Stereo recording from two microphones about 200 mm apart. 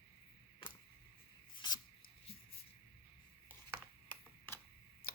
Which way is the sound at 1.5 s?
20° left (ahead or behind).